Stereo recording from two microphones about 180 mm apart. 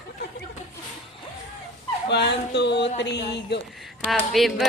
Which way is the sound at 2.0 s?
70° left (ahead or behind).